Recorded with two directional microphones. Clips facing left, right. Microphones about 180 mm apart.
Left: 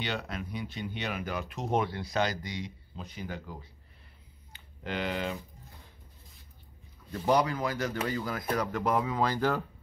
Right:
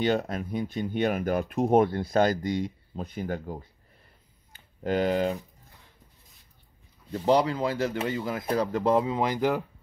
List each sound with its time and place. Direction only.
0.0 s speech: 45° right (ahead or behind)
4.5 s a sound: 40° right (ahead or behind)
7.1 s speech: 25° right (ahead or behind)